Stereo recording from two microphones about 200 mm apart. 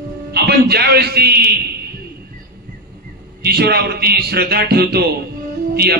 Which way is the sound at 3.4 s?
50° right (ahead or behind).